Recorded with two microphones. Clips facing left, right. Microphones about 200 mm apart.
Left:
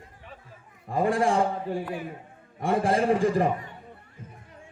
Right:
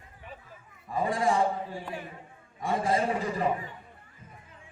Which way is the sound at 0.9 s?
55° left (ahead or behind).